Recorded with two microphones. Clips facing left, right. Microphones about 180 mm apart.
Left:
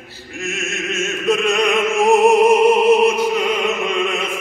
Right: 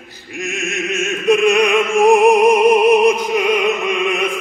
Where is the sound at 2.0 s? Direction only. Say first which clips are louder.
Right 1 dB; 15° right (ahead or behind).